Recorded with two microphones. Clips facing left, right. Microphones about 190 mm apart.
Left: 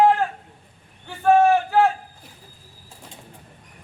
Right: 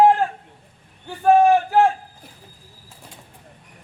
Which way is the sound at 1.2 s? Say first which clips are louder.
Right 2 dB; 15° right (ahead or behind).